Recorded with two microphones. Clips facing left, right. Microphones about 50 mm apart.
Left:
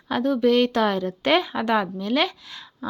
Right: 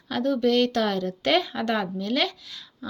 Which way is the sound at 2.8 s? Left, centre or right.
Left.